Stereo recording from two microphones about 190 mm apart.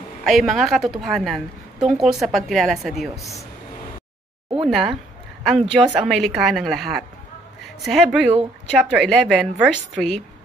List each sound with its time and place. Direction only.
0.2 s a woman's voice: centre (ahead or behind)
3.2 s speech: 15° left (ahead or behind)
4.6 s a woman's voice: centre (ahead or behind)